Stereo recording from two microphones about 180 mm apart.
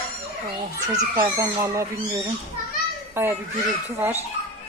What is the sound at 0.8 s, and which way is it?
Speech, 15° right (ahead or behind).